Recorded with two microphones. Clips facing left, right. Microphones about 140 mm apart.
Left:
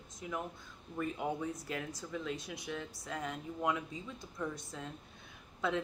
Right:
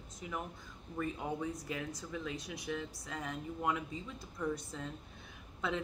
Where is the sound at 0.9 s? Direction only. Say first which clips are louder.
Left 1 dB; centre (ahead or behind).